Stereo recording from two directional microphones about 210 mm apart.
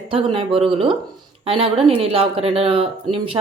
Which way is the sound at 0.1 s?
25° right (ahead or behind).